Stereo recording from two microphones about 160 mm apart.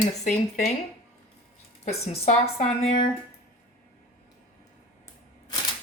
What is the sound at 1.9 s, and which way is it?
Speech, 40° left (ahead or behind).